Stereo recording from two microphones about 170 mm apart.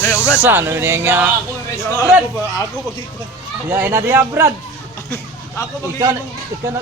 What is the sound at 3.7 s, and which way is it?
Speech, 10° right (ahead or behind).